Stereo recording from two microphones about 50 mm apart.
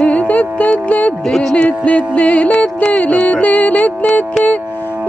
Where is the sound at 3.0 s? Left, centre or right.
Left.